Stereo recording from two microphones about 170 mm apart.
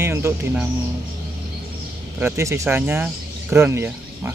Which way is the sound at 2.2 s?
15° right (ahead or behind).